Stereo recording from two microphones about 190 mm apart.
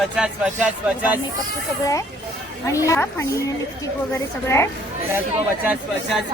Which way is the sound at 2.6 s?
15° left (ahead or behind).